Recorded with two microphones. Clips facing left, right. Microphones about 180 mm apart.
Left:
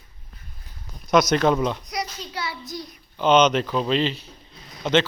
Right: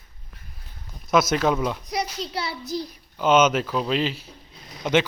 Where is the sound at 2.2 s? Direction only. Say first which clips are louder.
Right 2 dB; 30° right (ahead or behind).